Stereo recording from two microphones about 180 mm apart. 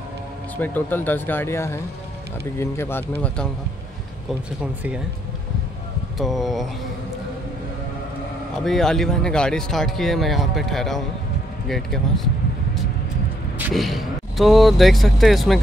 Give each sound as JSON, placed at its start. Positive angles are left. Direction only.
{"t": 0.6, "sound": "speech", "side_deg": 10}
{"t": 6.1, "sound": "speech", "side_deg": 0}
{"t": 8.6, "sound": "speech", "side_deg": 0}
{"t": 13.6, "sound": "speech", "side_deg": -5}